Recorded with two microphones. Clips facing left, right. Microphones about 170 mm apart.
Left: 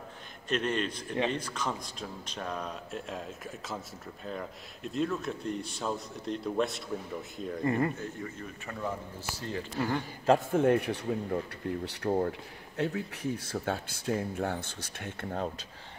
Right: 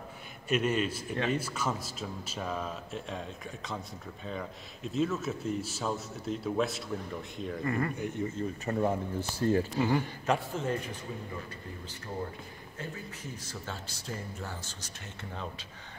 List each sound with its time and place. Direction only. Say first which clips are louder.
0.5 s a man's voice: right 2 dB; 10° right (ahead or behind)
7.6 s speech: left 4 dB; 25° left (ahead or behind)
8.0 s speech: right 5 dB; 20° right (ahead or behind)
8.7 s speech: right 11 dB; 35° right (ahead or behind)
9.4 s speech: right 10 dB; 45° right (ahead or behind)
9.8 s speech: right 3 dB; 5° right (ahead or behind)
10.5 s speech: left 8 dB; 60° left (ahead or behind)